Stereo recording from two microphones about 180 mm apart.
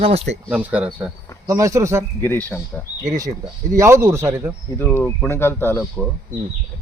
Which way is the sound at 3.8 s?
15° right (ahead or behind).